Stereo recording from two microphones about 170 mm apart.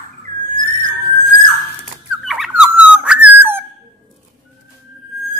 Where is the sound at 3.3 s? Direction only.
10° right (ahead or behind).